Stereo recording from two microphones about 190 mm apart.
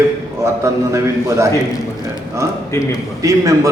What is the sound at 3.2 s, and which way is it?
Speech, 15° right (ahead or behind).